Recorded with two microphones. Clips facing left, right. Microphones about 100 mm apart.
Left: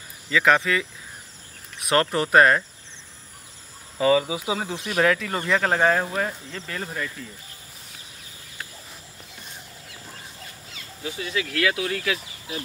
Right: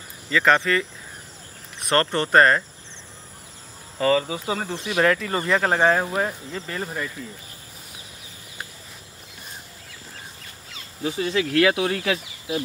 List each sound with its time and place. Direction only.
0.3 s speech: 5° left (ahead or behind)
4.0 s speech: 10° left (ahead or behind); by 7.1 s 10° right (ahead or behind)
11.1 s speech: 35° right (ahead or behind)